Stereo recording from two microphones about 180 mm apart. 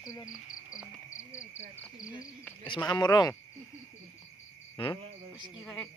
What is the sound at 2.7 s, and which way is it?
Speech, 25° left (ahead or behind).